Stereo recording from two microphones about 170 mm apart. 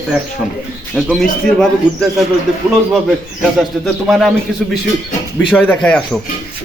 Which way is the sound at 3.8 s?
Centre (ahead or behind).